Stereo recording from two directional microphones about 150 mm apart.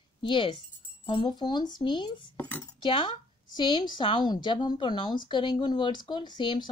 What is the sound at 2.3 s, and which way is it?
Speech, 10° left (ahead or behind).